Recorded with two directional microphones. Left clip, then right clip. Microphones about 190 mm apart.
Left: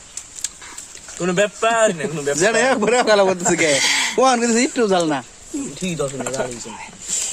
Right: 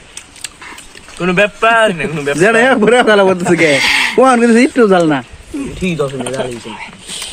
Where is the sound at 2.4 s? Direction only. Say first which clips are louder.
Right 7 dB; 40° right (ahead or behind).